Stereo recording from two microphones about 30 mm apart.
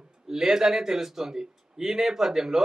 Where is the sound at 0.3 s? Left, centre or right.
Centre.